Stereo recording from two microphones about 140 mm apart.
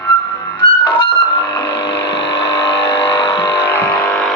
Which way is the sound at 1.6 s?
20° left (ahead or behind).